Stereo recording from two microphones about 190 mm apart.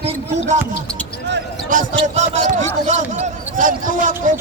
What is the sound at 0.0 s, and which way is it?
Basketball bounce, 35° right (ahead or behind).